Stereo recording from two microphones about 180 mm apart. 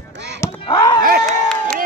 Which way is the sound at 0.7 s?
20° left (ahead or behind).